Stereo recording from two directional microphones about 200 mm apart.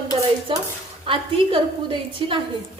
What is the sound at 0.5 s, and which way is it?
A woman's voice, 25° right (ahead or behind).